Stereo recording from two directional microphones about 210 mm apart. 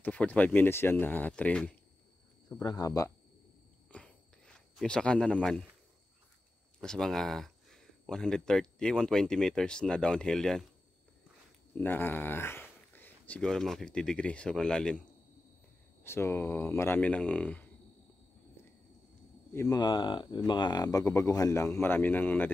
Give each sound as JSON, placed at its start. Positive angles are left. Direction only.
{"t": 0.0, "sound": "speech", "side_deg": 5}
{"t": 2.6, "sound": "speech", "side_deg": 15}
{"t": 3.9, "sound": "a sound", "side_deg": 5}
{"t": 6.8, "sound": "speech", "side_deg": 5}
{"t": 11.8, "sound": "speech", "side_deg": 10}
{"t": 19.5, "sound": "speech", "side_deg": 15}